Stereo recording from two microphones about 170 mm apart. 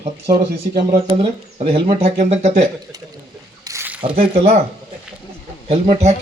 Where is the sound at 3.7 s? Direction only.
15° right (ahead or behind).